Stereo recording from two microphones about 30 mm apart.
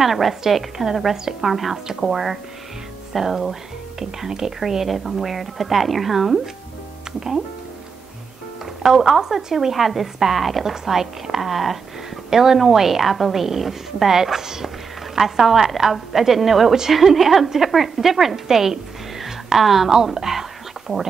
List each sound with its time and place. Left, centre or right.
0.0 s a woman's voice: centre
1.5 s a woman's voice: centre
1.9 s a woman's voice: centre
8.8 s a woman's voice: centre
12.3 s a woman's voice: centre
20.2 s whispering: centre